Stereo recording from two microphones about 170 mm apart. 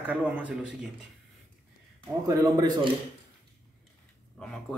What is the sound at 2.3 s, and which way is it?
Speech, 25° right (ahead or behind).